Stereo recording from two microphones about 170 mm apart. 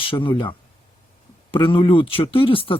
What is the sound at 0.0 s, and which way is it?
Speech, 30° left (ahead or behind).